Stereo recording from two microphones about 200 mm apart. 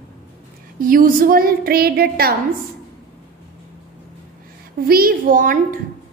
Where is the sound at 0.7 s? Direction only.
45° right (ahead or behind).